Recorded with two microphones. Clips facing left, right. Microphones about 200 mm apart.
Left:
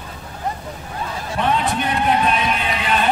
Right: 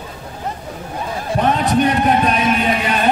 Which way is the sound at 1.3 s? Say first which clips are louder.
Right 4 dB; 45° right (ahead or behind).